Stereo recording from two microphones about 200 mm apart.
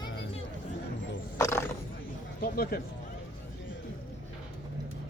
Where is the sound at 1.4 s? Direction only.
15° left (ahead or behind).